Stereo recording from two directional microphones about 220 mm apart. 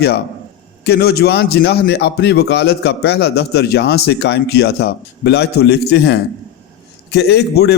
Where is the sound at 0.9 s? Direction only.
50° left (ahead or behind).